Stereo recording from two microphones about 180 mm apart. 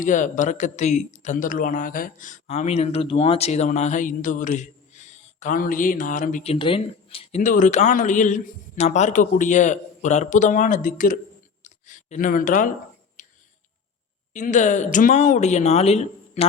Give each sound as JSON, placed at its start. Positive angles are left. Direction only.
{"t": 0.0, "sound": "speech", "side_deg": 45}
{"t": 11.6, "sound": "a sound", "side_deg": 40}
{"t": 14.3, "sound": "speech", "side_deg": 45}